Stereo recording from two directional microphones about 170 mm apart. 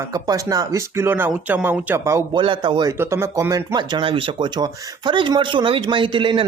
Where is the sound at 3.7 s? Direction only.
30° right (ahead or behind).